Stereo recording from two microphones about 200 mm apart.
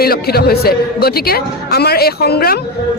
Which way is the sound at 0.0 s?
50° left (ahead or behind).